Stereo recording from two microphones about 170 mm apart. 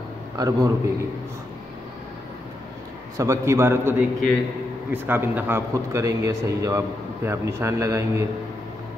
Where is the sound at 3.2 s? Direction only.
15° right (ahead or behind).